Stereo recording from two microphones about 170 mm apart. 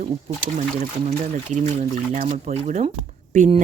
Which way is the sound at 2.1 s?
45° right (ahead or behind).